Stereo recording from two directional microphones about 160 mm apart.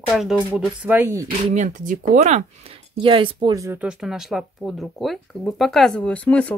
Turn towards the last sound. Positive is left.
turn(degrees=10)  # may be behind; listen again after turning